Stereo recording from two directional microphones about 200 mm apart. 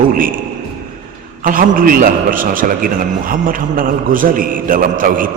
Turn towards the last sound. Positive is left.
turn(degrees=-40)  # may be behind; listen again after turning